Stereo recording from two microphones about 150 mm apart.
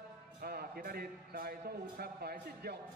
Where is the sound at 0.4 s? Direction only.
90° right.